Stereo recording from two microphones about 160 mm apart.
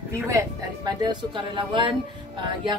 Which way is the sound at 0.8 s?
30° right (ahead or behind).